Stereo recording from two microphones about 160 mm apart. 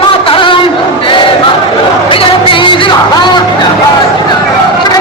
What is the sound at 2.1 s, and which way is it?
Music, 35° left (ahead or behind).